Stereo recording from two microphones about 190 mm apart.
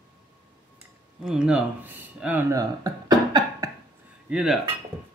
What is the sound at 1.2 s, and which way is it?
A man's voice, 5° right (ahead or behind).